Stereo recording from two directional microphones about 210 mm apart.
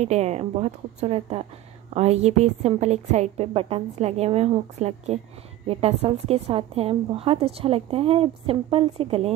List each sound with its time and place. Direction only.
0.0 s a woman's voice: 30° right (ahead or behind)